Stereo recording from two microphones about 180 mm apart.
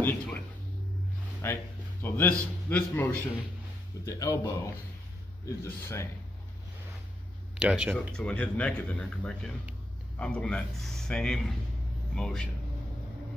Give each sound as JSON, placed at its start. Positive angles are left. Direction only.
{"t": 0.0, "sound": "a sound", "side_deg": 10}
{"t": 1.4, "sound": "a man's voice", "side_deg": 15}
{"t": 4.0, "sound": "speech", "side_deg": 20}
{"t": 5.4, "sound": "speech", "side_deg": 15}
{"t": 7.5, "sound": "a man's voice", "side_deg": -5}
{"t": 8.2, "sound": "a man's voice", "side_deg": 5}